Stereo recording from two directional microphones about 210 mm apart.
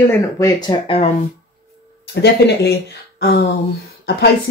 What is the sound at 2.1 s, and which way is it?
Speech, 55° left (ahead or behind).